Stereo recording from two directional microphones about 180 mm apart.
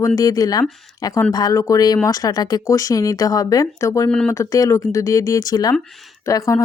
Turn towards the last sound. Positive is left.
turn(degrees=15)  # may be behind; listen again after turning